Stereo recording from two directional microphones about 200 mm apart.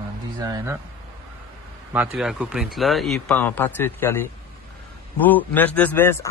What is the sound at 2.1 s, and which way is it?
Speech, 5° right (ahead or behind).